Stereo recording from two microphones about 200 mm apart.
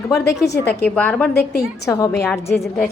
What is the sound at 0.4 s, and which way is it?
Speech, 60° left (ahead or behind).